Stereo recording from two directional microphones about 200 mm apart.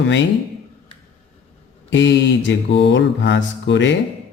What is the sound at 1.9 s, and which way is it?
Speech, 65° left (ahead or behind).